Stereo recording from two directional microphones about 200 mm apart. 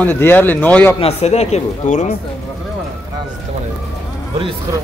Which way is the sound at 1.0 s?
30° left (ahead or behind).